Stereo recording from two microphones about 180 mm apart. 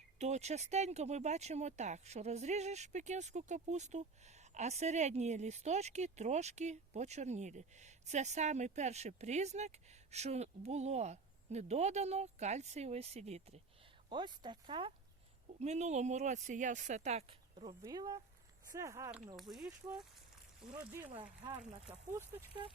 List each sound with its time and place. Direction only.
0.2 s speech: 40° right (ahead or behind)
14.1 s speech: 25° right (ahead or behind)
15.6 s speech: 40° right (ahead or behind)
17.8 s speech: 20° right (ahead or behind)
19.4 s speech: centre (ahead or behind)